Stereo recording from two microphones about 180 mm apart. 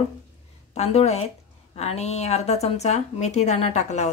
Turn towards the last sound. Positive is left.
turn(degrees=40)  # may be behind; listen again after turning